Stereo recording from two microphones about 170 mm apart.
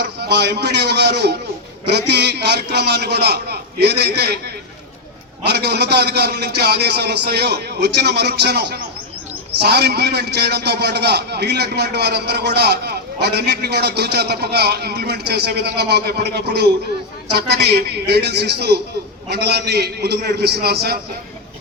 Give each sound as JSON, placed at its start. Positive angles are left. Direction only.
{"t": 0.2, "sound": "a man's voice", "side_deg": -80}
{"t": 5.5, "sound": "a man's voice", "side_deg": -75}